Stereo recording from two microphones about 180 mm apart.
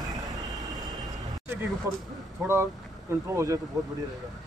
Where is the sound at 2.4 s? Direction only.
15° right (ahead or behind).